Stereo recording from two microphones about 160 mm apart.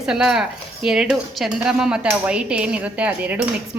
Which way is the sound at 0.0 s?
5° right (ahead or behind).